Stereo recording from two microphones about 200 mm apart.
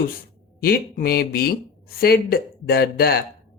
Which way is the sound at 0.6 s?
50° left (ahead or behind).